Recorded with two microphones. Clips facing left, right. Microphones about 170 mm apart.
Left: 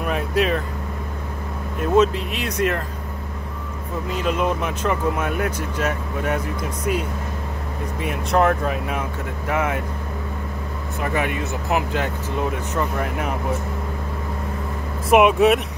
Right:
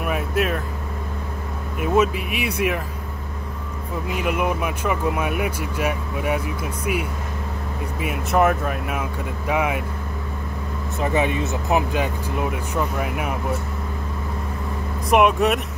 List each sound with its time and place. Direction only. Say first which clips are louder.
0.0 s speech: left 1 dB; 5° right (ahead or behind)
1.8 s speech: left 2 dB; 10° right (ahead or behind)
4.1 s speech: left 1 dB; 10° right (ahead or behind)
11.0 s speech: right 3 dB; 25° right (ahead or behind)
15.0 s speech: left 3 dB; centre (ahead or behind)